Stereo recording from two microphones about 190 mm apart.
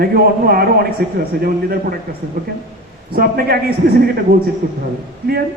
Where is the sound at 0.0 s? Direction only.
50° right (ahead or behind).